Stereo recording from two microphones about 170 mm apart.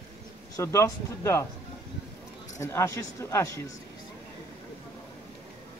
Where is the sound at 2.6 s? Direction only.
15° left (ahead or behind).